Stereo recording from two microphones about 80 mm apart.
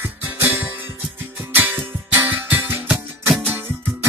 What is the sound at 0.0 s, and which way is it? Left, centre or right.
Music, right.